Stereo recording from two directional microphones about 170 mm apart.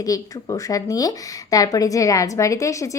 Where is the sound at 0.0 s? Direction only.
20° left (ahead or behind).